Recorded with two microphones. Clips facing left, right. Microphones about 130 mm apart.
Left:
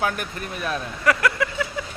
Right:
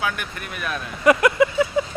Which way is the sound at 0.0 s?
35° left (ahead or behind).